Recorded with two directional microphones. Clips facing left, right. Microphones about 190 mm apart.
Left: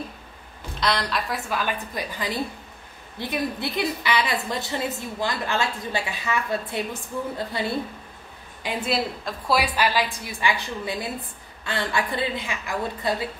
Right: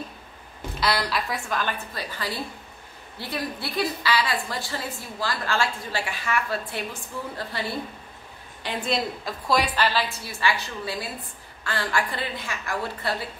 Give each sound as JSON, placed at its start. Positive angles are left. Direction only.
{"t": 0.7, "sound": "a woman's voice", "side_deg": -5}
{"t": 8.6, "sound": "a woman's voice", "side_deg": 5}